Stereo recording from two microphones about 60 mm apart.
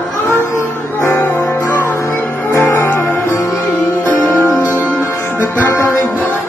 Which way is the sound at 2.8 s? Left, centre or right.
Left.